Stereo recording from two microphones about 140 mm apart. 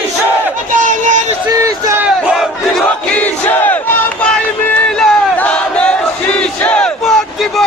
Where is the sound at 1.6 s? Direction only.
20° right (ahead or behind).